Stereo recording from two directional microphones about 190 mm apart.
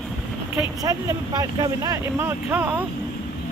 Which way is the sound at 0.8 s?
20° right (ahead or behind).